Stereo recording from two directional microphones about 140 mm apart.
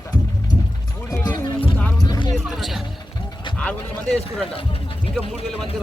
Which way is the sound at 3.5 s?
5° left (ahead or behind).